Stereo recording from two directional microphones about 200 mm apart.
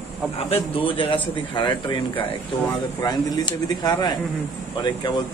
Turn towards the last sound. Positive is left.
turn(degrees=20)  # may be behind; listen again after turning